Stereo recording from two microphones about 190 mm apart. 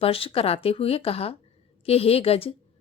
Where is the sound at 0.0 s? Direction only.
30° left (ahead or behind).